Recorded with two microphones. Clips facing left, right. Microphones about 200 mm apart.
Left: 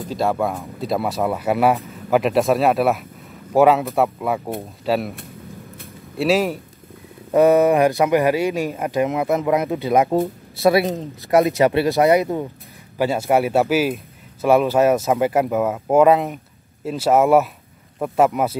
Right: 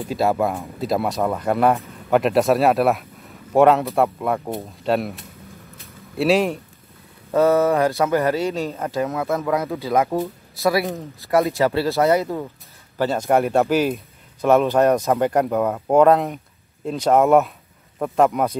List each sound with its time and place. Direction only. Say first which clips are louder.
0.1 s speech: right 1 dB; 5° right (ahead or behind)
6.1 s speech: even; centre (ahead or behind)
7.3 s speech: left 3 dB; 15° left (ahead or behind)